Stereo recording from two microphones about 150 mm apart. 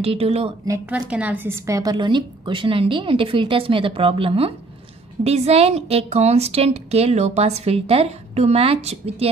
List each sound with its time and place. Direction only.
0.0 s a woman's voice: 40° right (ahead or behind)
0.8 s a woman's voice: 10° right (ahead or behind); by 9.3 s 40° right (ahead or behind)